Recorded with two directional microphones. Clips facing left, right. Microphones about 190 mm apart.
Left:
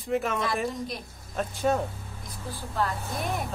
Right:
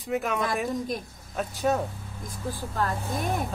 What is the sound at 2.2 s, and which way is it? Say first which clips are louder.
Speech: right 5 dB; 45° right (ahead or behind).